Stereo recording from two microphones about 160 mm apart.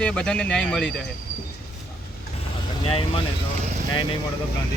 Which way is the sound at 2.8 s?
35° left (ahead or behind).